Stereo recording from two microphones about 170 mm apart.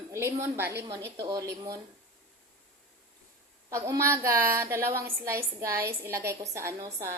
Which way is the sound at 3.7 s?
15° right (ahead or behind).